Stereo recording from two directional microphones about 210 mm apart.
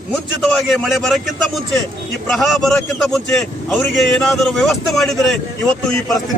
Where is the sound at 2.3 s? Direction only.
Centre (ahead or behind).